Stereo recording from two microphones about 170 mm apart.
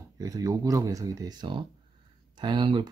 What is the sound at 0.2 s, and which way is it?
Speech, 20° right (ahead or behind).